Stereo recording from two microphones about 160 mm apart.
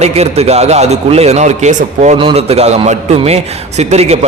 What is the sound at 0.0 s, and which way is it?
A man's voice, 40° right (ahead or behind).